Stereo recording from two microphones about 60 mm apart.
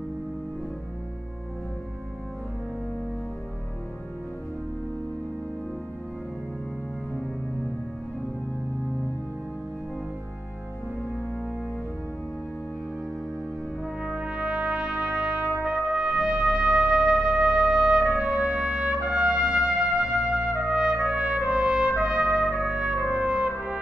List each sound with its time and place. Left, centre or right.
14.0 s brass instrument: right
15.6 s music: centre
20.6 s trumpet: centre